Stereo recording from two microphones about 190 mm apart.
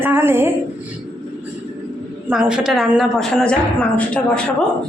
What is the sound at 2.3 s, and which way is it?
A woman's voice, 5° right (ahead or behind).